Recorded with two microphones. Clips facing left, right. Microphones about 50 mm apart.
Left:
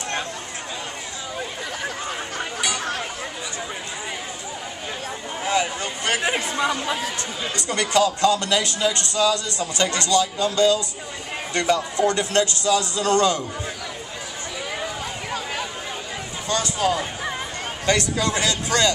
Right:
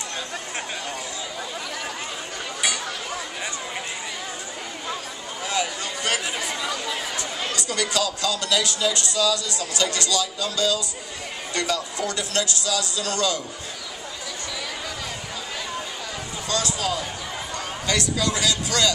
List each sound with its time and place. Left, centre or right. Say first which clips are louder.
5.4 s a sound: left 4 dB; left
6.2 s speech: left 6 dB; left
16.4 s a man's voice: left 4 dB; left